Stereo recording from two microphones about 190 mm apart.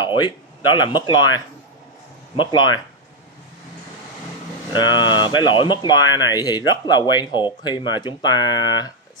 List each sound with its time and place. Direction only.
0.0 s a sound: 25° left (ahead or behind)
0.7 s speech: 25° left (ahead or behind)
4.7 s speech: 25° left (ahead or behind)